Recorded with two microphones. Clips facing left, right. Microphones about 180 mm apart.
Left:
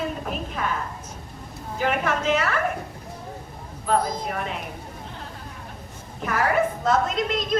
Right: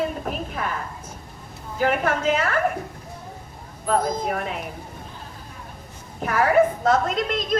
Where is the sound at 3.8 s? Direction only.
50° right (ahead or behind).